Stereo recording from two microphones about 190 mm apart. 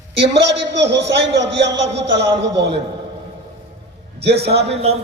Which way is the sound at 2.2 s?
65° right (ahead or behind).